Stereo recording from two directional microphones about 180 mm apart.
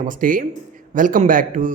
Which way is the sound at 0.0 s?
50° right (ahead or behind).